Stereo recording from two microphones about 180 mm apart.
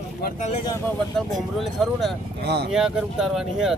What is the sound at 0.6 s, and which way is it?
Speech, 20° left (ahead or behind).